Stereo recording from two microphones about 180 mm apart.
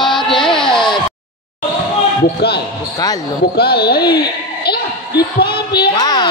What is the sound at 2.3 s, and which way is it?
Speech, 65° left (ahead or behind).